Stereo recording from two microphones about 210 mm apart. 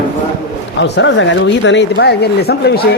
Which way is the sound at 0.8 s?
55° left (ahead or behind).